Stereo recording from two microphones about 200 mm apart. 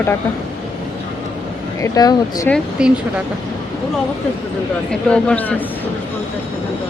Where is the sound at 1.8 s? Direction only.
20° left (ahead or behind).